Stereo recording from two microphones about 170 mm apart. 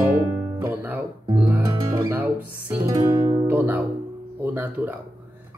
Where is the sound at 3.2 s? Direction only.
40° right (ahead or behind).